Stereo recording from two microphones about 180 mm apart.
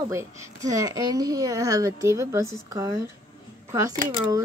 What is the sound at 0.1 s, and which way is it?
Speech, 15° right (ahead or behind).